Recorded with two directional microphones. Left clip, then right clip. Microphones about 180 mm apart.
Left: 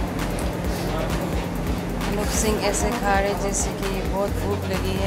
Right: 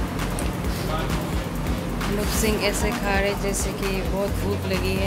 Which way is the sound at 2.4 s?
35° right (ahead or behind).